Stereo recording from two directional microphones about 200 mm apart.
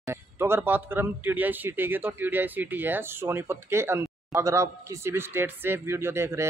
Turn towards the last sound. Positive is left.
turn(degrees=-15)  # may be behind; listen again after turning